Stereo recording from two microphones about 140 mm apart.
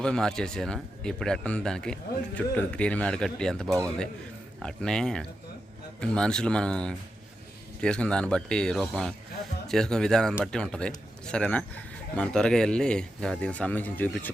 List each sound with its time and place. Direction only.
0.0 s speech: 5° left (ahead or behind)
3.7 s a man's voice: 25° right (ahead or behind)
4.6 s speech: 5° left (ahead or behind)